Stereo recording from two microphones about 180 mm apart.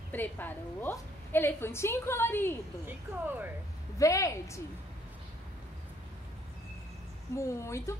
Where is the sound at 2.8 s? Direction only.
10° right (ahead or behind).